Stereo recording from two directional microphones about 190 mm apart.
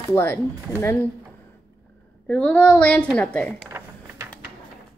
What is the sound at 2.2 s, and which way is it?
A woman's voice, 5° left (ahead or behind).